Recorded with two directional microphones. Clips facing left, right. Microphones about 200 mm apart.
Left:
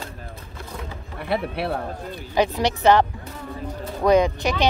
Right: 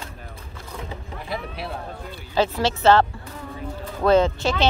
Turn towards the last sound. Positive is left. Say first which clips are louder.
# even
turn(degrees=15)  # may be behind; listen again after turning